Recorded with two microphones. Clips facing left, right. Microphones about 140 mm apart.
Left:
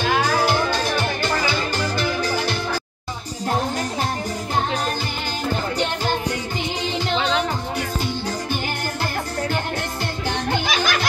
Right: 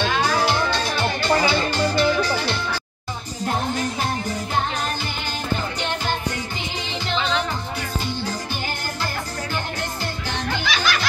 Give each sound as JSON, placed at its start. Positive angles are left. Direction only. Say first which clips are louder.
{"t": 0.1, "sound": "music", "louder": "left 1 dB", "side_deg": 45}
{"t": 2.0, "sound": "music", "louder": "right 3 dB", "side_deg": 45}
{"t": 10.5, "sound": "music", "louder": "left 1 dB", "side_deg": 45}